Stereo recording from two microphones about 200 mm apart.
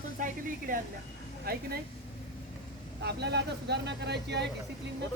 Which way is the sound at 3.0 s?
55° right (ahead or behind).